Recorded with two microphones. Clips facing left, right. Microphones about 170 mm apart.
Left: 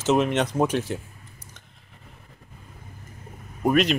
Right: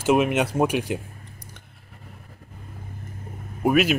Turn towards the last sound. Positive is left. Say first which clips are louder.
# right 1 dB
turn(degrees=-5)  # may be behind; listen again after turning